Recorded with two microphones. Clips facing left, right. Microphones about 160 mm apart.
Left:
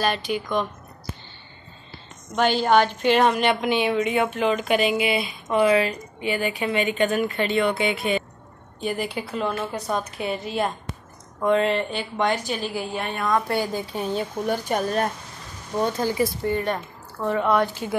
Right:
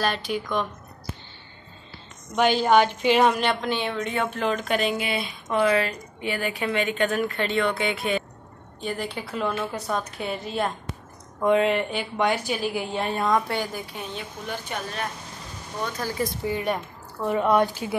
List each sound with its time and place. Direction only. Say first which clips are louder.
0.0 s a woman's voice: left 2 dB; centre (ahead or behind)
2.3 s a woman's voice: even; 5° right (ahead or behind)
3.6 s a woman's voice: left 5 dB; 15° left (ahead or behind)
11.4 s speech: even; 10° right (ahead or behind)
12.9 s a woman's voice: right 2 dB; 30° right (ahead or behind)
13.9 s a woman's voice: left 9 dB; 40° left (ahead or behind)
15.8 s speech: left 6 dB; 20° left (ahead or behind)
16.4 s speech: left 2 dB; 10° right (ahead or behind)